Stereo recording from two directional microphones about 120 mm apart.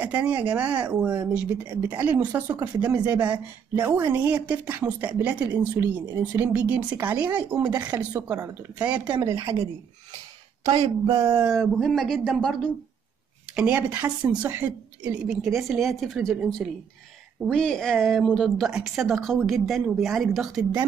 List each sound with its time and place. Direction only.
0.3 s speech: 10° right (ahead or behind)
9.2 s a woman's voice: 25° right (ahead or behind)
11.4 s speech: centre (ahead or behind)
13.6 s speech: 10° right (ahead or behind)